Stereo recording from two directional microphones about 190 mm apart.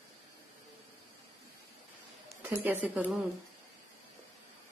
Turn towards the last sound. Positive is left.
turn(degrees=-10)  # may be behind; listen again after turning